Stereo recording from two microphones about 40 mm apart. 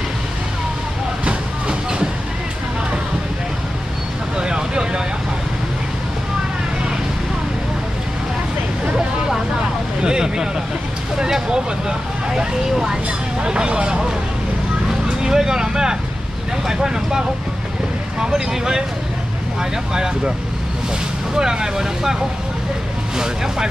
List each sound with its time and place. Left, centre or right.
1.2 s train: right
4.4 s a sound: right
10.0 s vehicle: centre
15.2 s vehicle: centre
18.2 s vehicle: centre
21.4 s vehicle: centre
23.1 s vehicle: centre